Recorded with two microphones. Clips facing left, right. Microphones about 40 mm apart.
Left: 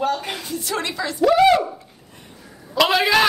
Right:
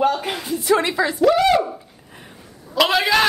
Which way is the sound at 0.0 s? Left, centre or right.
Centre.